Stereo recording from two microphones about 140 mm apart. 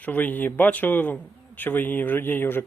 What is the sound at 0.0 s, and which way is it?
A man's voice, 10° left (ahead or behind).